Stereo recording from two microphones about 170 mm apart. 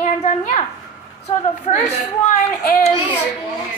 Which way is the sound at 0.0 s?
40° left (ahead or behind).